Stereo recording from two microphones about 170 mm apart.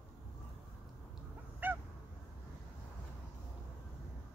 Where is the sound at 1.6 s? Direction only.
10° right (ahead or behind).